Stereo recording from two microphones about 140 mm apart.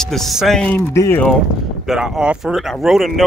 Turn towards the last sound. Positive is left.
turn(degrees=0)  # may be behind; listen again after turning